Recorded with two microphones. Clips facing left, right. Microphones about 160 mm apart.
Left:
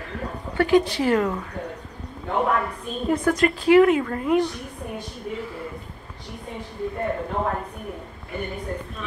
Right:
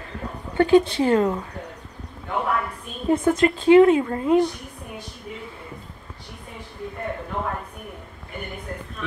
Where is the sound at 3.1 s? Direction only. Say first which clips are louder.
Right 2 dB; 25° right (ahead or behind).